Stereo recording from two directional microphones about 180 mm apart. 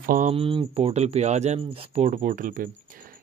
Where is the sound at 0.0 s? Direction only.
50° right (ahead or behind).